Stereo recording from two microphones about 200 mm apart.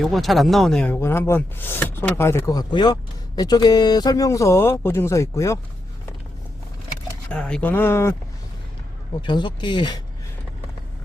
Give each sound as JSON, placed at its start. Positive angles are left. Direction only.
{"t": 0.0, "sound": "speech", "side_deg": 0}
{"t": 7.3, "sound": "speech", "side_deg": 5}
{"t": 9.2, "sound": "speech", "side_deg": 25}